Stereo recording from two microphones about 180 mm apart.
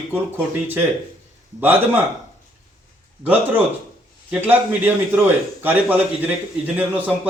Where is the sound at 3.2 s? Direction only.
10° right (ahead or behind).